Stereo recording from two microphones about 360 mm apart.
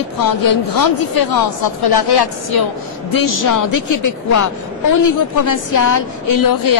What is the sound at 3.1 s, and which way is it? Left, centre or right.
A woman's voice, left.